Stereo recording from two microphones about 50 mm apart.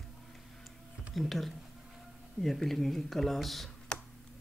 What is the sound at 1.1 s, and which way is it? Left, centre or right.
Speech, centre.